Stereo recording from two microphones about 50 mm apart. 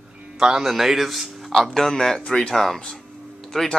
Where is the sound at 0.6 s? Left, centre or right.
Centre.